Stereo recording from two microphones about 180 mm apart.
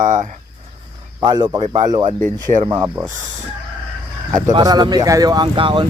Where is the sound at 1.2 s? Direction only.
25° right (ahead or behind).